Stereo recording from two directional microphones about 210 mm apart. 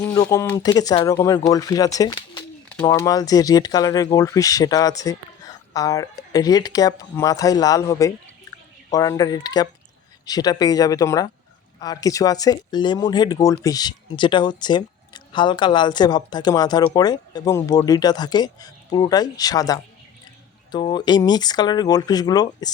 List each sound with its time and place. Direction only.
0.0 s speech: 15° left (ahead or behind)